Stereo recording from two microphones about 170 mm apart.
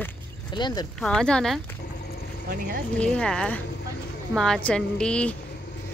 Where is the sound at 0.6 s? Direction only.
25° left (ahead or behind).